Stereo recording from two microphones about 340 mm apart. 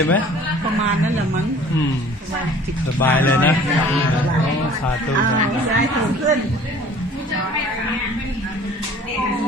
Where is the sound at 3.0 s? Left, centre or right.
Centre.